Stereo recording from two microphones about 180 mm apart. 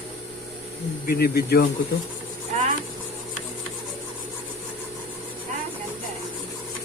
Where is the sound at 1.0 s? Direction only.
60° left (ahead or behind).